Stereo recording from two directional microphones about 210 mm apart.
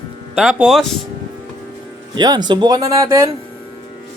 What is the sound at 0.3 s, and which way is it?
Speech, centre (ahead or behind).